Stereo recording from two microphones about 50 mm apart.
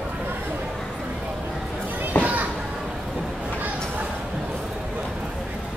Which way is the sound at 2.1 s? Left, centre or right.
Left.